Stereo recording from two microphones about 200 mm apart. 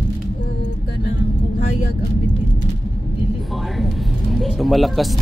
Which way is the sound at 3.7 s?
Centre (ahead or behind).